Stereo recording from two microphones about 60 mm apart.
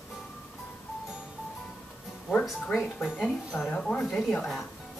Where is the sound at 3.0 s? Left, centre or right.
Centre.